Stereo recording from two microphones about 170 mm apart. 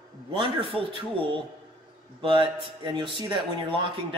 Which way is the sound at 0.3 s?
30° right (ahead or behind).